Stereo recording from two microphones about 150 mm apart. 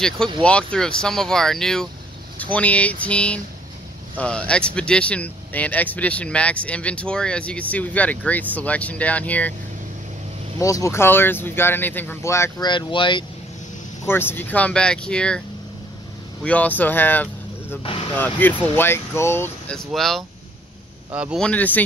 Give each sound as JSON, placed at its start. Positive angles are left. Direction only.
{"t": 0.4, "sound": "speech", "side_deg": 5}
{"t": 10.6, "sound": "speech", "side_deg": 20}
{"t": 14.0, "sound": "speech", "side_deg": 15}
{"t": 16.4, "sound": "speech", "side_deg": 10}
{"t": 19.7, "sound": "speech", "side_deg": 0}
{"t": 21.4, "sound": "speech", "side_deg": 10}